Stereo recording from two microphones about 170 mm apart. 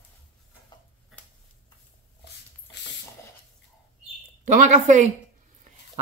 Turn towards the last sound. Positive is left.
turn(degrees=-45)  # may be behind; listen again after turning